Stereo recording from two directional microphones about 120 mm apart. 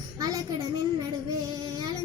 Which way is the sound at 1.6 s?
30° right (ahead or behind).